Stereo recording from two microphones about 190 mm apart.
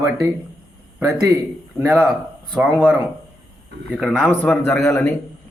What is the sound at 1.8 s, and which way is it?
A man's voice, centre (ahead or behind).